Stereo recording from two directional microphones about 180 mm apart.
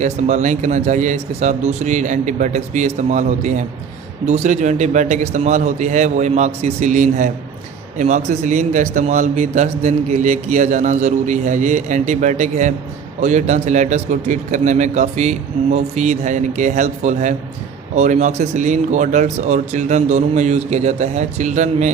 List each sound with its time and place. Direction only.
0.0 s a man's voice: 40° right (ahead or behind)